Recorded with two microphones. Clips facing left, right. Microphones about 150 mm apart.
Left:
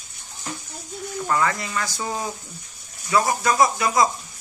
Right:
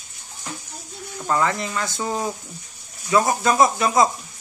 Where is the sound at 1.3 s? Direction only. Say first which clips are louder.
Right 2 dB; 20° right (ahead or behind).